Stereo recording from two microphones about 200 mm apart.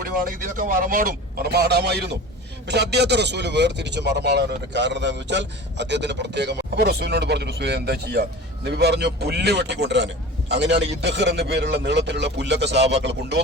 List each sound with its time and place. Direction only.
0.5 s a man's voice: 45° right (ahead or behind)